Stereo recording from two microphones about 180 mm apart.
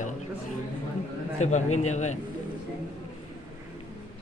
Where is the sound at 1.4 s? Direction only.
40° left (ahead or behind).